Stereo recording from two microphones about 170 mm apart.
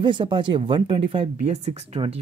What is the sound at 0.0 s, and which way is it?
Speech, 30° right (ahead or behind).